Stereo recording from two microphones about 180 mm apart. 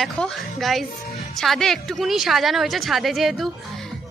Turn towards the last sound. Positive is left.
turn(degrees=0)  # may be behind; listen again after turning